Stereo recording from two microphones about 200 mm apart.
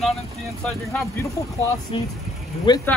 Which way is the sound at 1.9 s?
25° left (ahead or behind).